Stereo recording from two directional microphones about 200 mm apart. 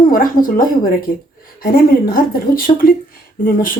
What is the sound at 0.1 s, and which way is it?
Speech, 45° left (ahead or behind).